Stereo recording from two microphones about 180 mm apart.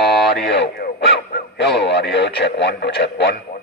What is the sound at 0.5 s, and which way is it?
Speech, 65° left (ahead or behind).